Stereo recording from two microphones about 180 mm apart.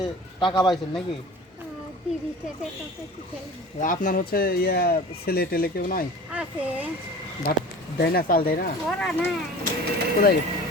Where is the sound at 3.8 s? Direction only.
50° left (ahead or behind).